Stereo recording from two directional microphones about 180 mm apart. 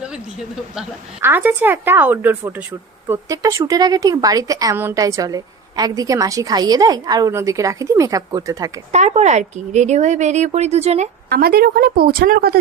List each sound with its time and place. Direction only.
0.8 s a woman's voice: 10° right (ahead or behind)
8.9 s speech: 40° right (ahead or behind)
11.3 s a woman's voice: 60° right (ahead or behind)